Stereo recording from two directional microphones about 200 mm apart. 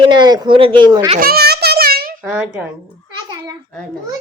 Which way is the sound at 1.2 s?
50° right (ahead or behind).